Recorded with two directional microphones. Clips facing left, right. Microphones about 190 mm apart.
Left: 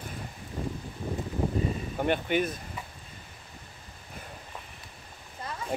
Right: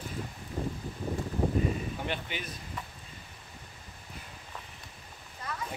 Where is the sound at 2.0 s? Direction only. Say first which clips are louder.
Left 10 dB; 50° left (ahead or behind).